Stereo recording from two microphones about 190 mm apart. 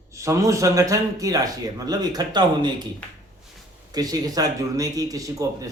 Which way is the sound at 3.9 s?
20° right (ahead or behind).